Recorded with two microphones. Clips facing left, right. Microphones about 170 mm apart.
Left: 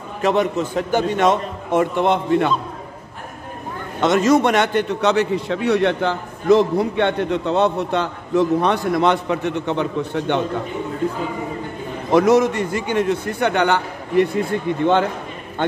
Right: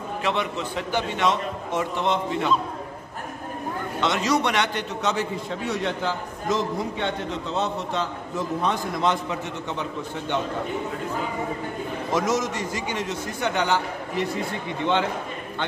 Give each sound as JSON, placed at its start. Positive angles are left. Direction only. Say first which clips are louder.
{"t": 0.2, "sound": "a man's voice", "louder": "left 9 dB", "side_deg": 45}
{"t": 4.0, "sound": "a man's voice", "louder": "left 8 dB", "side_deg": 50}
{"t": 12.1, "sound": "a man's voice", "louder": "left 11 dB", "side_deg": 60}